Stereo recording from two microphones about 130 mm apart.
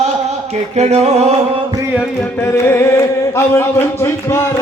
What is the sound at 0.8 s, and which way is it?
Music, 55° right (ahead or behind).